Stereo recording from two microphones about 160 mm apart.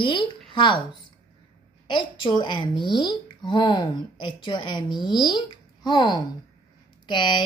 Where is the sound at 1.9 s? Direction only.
30° left (ahead or behind).